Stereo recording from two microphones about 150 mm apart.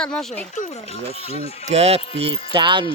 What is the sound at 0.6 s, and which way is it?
Speech, 55° left (ahead or behind).